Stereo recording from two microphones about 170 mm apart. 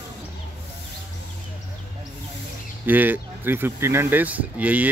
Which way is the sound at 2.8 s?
10° right (ahead or behind).